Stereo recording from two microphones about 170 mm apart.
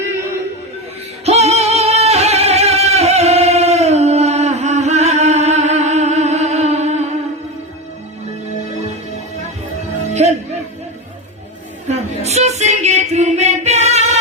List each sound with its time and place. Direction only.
1.2 s music: 40° right (ahead or behind)
10.2 s music: 40° right (ahead or behind)
11.9 s female singing: 40° right (ahead or behind)